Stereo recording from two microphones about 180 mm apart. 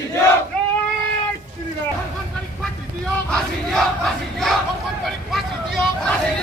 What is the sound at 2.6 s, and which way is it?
Battle cry, 5° left (ahead or behind).